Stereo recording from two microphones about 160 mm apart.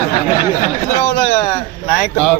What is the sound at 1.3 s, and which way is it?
Speech, 50° left (ahead or behind).